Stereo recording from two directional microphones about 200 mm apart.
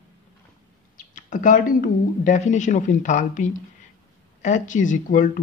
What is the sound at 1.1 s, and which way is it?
Speech, 40° left (ahead or behind).